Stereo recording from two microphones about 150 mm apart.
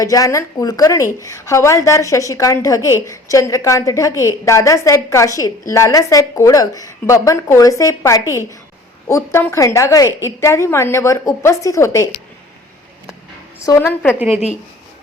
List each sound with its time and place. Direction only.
0.0 s a woman's voice: 25° left (ahead or behind)
13.7 s a woman's voice: 15° left (ahead or behind)
14.2 s a woman's voice: 5° right (ahead or behind)